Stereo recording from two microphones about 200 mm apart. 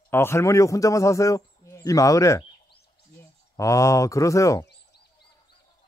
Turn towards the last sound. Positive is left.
turn(degrees=15)  # may be behind; listen again after turning